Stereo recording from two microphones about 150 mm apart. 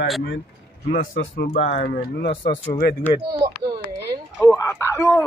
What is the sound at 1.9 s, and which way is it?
Speech, 75° left (ahead or behind).